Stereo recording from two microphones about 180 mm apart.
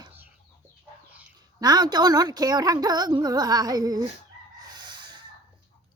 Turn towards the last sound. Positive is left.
turn(degrees=-25)  # may be behind; listen again after turning